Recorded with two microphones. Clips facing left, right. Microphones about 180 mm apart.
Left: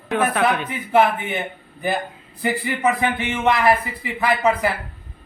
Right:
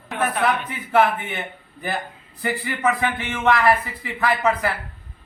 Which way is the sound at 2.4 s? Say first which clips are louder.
Left 2 dB; 20° left (ahead or behind).